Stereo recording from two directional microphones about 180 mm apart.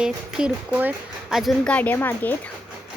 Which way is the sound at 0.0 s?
5° right (ahead or behind).